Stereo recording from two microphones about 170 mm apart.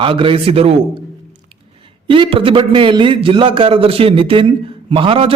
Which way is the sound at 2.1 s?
30° right (ahead or behind).